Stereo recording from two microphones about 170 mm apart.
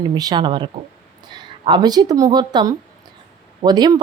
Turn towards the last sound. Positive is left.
turn(degrees=-25)  # may be behind; listen again after turning